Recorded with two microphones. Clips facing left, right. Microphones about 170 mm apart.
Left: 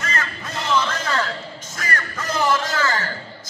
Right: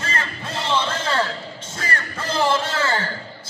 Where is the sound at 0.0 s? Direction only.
30° right (ahead or behind).